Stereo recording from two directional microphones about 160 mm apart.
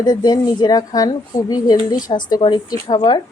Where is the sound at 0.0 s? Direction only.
25° left (ahead or behind).